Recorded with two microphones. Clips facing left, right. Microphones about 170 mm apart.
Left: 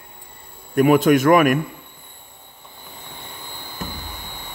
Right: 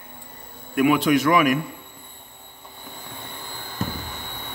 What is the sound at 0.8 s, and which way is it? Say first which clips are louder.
Speech: left 4 dB; 45° left (ahead or behind).